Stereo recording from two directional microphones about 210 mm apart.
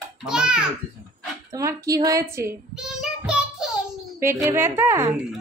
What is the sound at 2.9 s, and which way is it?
Child singing, 5° right (ahead or behind).